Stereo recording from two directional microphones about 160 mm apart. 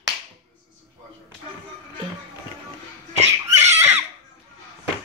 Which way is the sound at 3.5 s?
15° right (ahead or behind).